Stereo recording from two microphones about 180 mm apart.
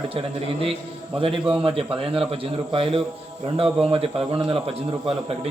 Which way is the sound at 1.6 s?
30° right (ahead or behind).